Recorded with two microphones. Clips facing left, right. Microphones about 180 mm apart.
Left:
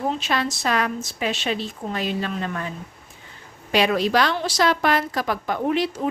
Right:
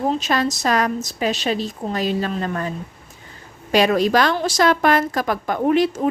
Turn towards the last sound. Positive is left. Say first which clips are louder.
# right 5 dB
turn(degrees=-50)  # may be behind; listen again after turning